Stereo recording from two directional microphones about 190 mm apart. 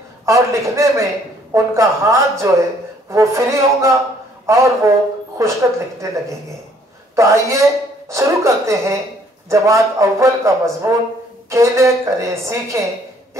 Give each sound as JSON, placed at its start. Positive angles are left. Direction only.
{"t": 0.2, "sound": "a man's voice", "side_deg": -15}